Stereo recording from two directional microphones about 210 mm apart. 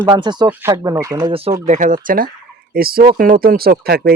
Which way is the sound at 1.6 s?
35° right (ahead or behind).